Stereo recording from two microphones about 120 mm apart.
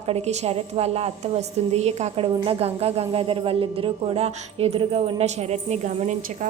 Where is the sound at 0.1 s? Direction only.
60° right (ahead or behind).